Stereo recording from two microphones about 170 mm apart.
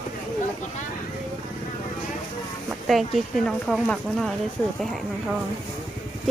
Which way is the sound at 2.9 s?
Centre (ahead or behind).